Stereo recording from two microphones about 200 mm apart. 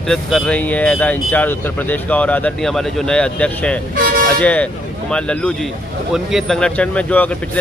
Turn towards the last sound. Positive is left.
turn(degrees=5)  # may be behind; listen again after turning